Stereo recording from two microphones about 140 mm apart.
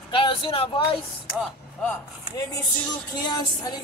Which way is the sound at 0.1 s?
40° left (ahead or behind).